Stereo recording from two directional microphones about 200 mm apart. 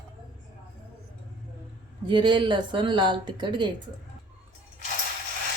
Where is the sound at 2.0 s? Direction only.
25° right (ahead or behind).